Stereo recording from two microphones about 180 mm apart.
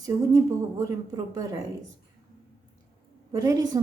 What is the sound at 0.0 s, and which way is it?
A woman's voice, 20° right (ahead or behind).